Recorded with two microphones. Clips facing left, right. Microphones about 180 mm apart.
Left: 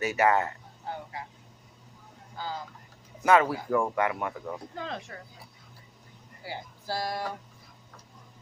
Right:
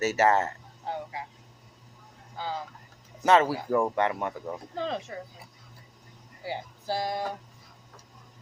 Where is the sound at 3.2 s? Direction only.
30° right (ahead or behind).